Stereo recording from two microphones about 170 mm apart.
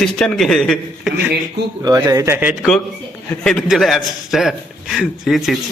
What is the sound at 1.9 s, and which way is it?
Speech, 20° right (ahead or behind).